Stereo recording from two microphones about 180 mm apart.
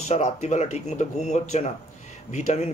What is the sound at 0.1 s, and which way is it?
A man's voice, 40° left (ahead or behind).